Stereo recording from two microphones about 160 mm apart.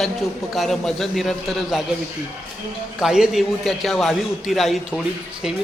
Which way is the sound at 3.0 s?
5° right (ahead or behind).